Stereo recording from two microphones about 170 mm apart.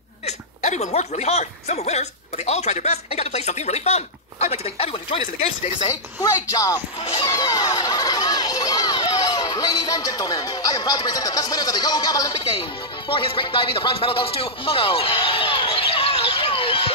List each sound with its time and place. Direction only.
0.3 s speech: 40° left (ahead or behind)
6.5 s speech: 20° left (ahead or behind)
7.2 s a sound: 20° left (ahead or behind)